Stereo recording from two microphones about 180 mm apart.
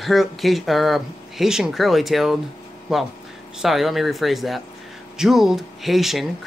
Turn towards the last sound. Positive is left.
turn(degrees=0)  # may be behind; listen again after turning